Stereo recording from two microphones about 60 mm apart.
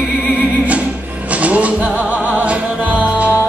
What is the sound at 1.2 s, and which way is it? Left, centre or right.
Music, right.